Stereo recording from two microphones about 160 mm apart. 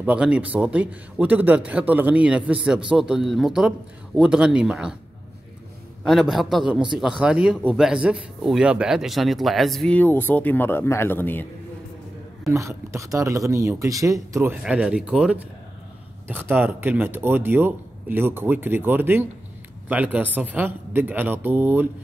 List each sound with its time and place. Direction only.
0.0 s a man's voice: 5° right (ahead or behind)
6.0 s a man's voice: centre (ahead or behind)
12.4 s speech: 20° right (ahead or behind)
14.6 s a man's voice: 5° right (ahead or behind)